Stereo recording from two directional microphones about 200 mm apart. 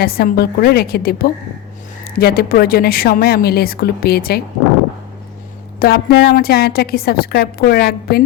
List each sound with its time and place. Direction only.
0.0 s a woman's voice: 50° left (ahead or behind)
5.8 s a woman's voice: 55° left (ahead or behind)